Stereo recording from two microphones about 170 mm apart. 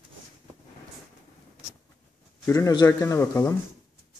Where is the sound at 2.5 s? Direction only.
20° left (ahead or behind).